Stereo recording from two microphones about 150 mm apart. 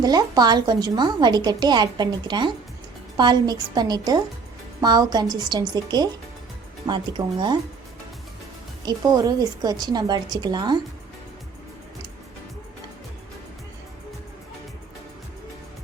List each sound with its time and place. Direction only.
0.0 s a woman's voice: 25° right (ahead or behind)
8.8 s a woman's voice: 25° right (ahead or behind)